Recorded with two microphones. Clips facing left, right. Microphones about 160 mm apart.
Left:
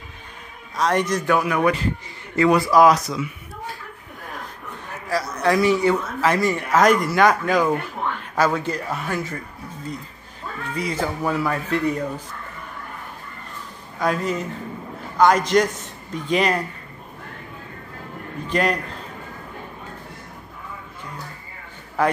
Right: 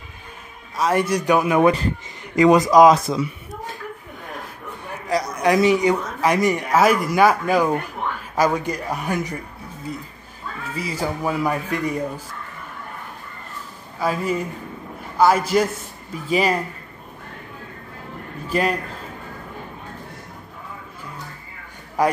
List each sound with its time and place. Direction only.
0.7 s speech: 5° right (ahead or behind); by 3.2 s 20° right (ahead or behind)
4.8 s speech: 15° right (ahead or behind)
10.7 s speech: 5° right (ahead or behind)
13.9 s a man's voice: 5° right (ahead or behind)
18.5 s a man's voice: 5° right (ahead or behind)
22.0 s speech: 15° right (ahead or behind)